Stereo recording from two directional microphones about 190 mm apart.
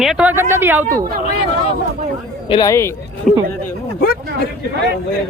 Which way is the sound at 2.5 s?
20° left (ahead or behind).